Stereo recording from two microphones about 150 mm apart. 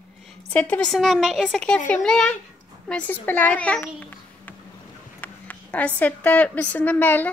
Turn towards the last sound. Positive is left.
turn(degrees=15)  # may be behind; listen again after turning